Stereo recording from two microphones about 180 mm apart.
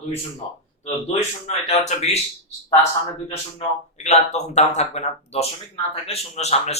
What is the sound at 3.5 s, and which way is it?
Speech, 40° left (ahead or behind).